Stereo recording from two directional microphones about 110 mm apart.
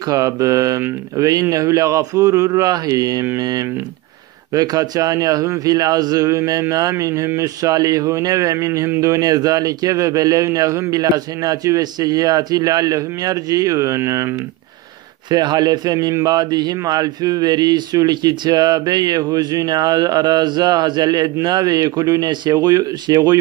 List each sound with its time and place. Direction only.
0.1 s a man's voice: 30° right (ahead or behind)
15.2 s a man's voice: 40° right (ahead or behind)